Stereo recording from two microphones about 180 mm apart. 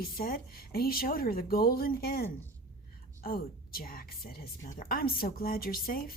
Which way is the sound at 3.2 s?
55° left (ahead or behind).